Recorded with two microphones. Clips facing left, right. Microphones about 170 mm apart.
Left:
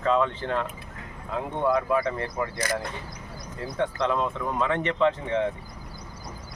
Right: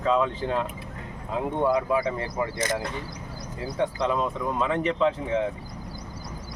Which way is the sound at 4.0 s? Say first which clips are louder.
Even; 5° right (ahead or behind).